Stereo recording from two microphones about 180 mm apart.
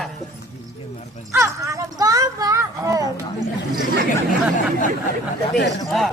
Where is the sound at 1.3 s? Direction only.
15° right (ahead or behind).